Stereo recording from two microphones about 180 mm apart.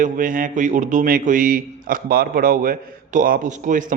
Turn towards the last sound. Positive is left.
turn(degrees=-45)  # may be behind; listen again after turning